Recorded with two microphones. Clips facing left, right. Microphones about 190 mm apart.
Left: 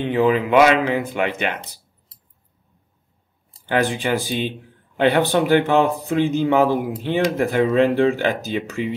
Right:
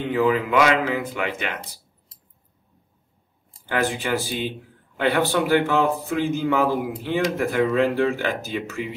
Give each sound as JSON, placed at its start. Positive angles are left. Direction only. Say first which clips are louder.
{"t": 0.0, "sound": "speech", "louder": "left 3 dB", "side_deg": 20}
{"t": 3.6, "sound": "speech", "louder": "left 4 dB", "side_deg": 20}